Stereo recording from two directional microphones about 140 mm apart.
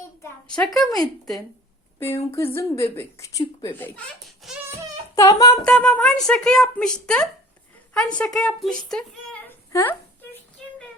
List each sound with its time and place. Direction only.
0.4 s speech: 5° left (ahead or behind)
2.0 s speech: 20° left (ahead or behind)
3.8 s speech: 10° left (ahead or behind)
4.4 s speech: centre (ahead or behind)
5.1 s speech: 25° left (ahead or behind)
5.6 s speech: 5° left (ahead or behind)
8.9 s a sound: 10° left (ahead or behind)